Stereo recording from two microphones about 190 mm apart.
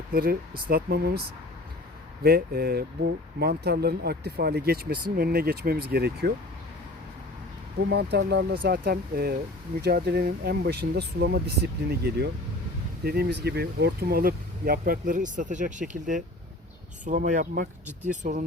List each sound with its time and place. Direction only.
0.1 s speech: 50° right (ahead or behind)
2.2 s speech: 55° right (ahead or behind)
7.9 s speech: 60° right (ahead or behind); by 18.4 s 40° right (ahead or behind)